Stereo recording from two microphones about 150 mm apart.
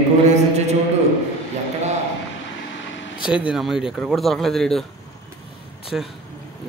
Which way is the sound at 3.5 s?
Centre (ahead or behind).